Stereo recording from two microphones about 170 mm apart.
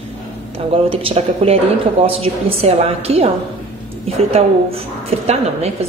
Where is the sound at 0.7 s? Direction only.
35° right (ahead or behind).